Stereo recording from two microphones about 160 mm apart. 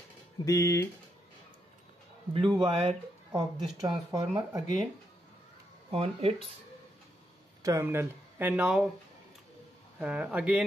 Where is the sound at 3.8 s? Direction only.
25° right (ahead or behind).